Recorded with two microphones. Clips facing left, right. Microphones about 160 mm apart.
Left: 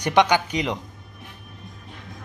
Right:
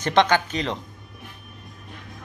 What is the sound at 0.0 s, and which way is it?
Music, 15° left (ahead or behind).